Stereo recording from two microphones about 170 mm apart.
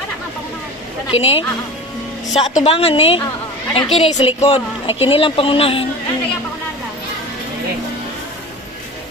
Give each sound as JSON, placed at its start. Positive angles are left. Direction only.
{"t": 1.1, "sound": "speech", "side_deg": 35}